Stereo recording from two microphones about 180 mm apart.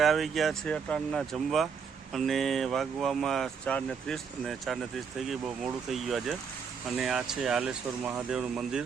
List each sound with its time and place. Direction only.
0.0 s speech: centre (ahead or behind)